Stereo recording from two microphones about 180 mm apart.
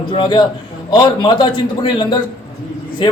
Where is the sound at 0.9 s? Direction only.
25° left (ahead or behind).